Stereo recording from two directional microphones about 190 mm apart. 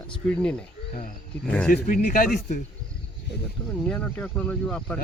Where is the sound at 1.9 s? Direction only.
45° left (ahead or behind).